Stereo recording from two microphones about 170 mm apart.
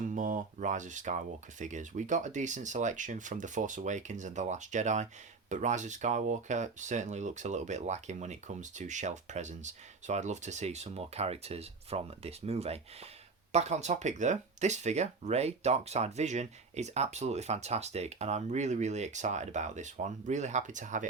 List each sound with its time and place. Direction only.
0.1 s speech: 50° right (ahead or behind)